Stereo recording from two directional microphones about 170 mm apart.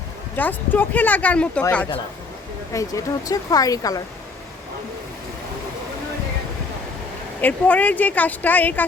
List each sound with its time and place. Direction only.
0.3 s speech: 10° left (ahead or behind)
2.7 s speech: 20° left (ahead or behind)
7.4 s speech: 10° left (ahead or behind)